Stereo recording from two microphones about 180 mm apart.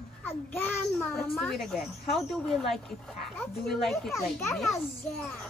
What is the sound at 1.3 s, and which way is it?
A child's voice, centre (ahead or behind).